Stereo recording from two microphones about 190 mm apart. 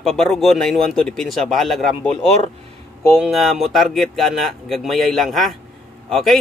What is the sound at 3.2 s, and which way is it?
Speech, centre (ahead or behind).